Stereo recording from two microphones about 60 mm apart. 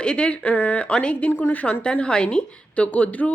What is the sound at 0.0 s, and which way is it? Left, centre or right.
Speech, centre.